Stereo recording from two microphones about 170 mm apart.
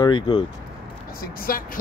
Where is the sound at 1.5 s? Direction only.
60° left (ahead or behind).